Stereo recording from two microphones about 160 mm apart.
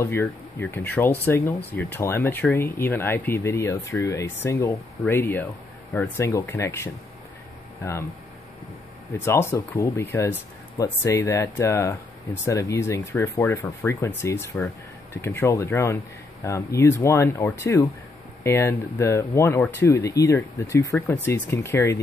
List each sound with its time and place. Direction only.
0.0 s speech: 15° left (ahead or behind)
9.1 s speech: 15° left (ahead or behind)